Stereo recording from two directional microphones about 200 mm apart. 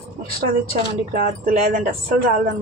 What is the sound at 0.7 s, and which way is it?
Speech, 45° right (ahead or behind).